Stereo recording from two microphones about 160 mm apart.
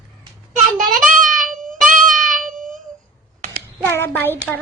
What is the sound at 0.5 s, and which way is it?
Child singing, 55° right (ahead or behind).